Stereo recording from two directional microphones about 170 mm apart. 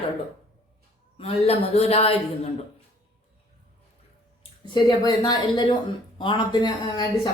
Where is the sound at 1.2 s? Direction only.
35° left (ahead or behind).